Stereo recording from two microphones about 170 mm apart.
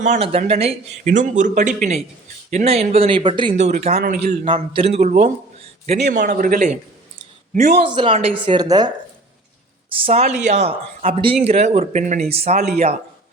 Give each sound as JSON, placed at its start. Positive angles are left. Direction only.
{"t": 0.0, "sound": "speech", "side_deg": -40}
{"t": 3.6, "sound": "speech", "side_deg": -40}
{"t": 4.0, "sound": "a man's voice", "side_deg": -60}
{"t": 4.4, "sound": "speech", "side_deg": -30}
{"t": 7.9, "sound": "speech", "side_deg": -30}
{"t": 10.1, "sound": "speech", "side_deg": -40}